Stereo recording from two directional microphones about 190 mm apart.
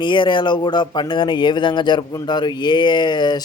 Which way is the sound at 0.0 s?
25° left (ahead or behind).